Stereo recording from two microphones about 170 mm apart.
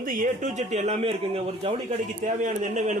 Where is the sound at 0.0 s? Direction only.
55° right (ahead or behind).